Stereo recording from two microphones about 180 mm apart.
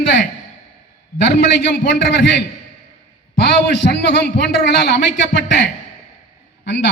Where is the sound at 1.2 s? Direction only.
70° left (ahead or behind).